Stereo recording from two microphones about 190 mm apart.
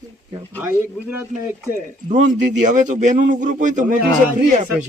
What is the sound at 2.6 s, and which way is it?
Speech, 40° right (ahead or behind).